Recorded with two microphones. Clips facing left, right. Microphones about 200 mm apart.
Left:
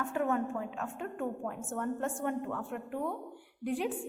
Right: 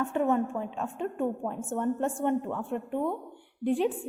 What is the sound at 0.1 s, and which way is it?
A woman's voice, 25° right (ahead or behind).